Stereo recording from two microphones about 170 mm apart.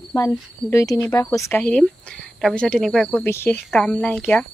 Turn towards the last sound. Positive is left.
turn(degrees=5)  # may be behind; listen again after turning